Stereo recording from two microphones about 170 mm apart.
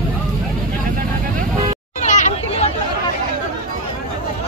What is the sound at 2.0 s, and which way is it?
Hubbub, 45° left (ahead or behind).